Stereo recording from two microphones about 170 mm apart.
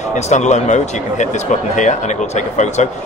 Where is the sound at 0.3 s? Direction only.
45° left (ahead or behind).